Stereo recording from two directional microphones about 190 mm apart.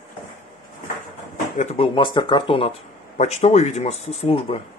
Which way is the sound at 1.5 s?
35° left (ahead or behind).